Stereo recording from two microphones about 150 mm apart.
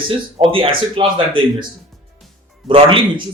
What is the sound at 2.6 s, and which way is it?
Speech, 35° right (ahead or behind).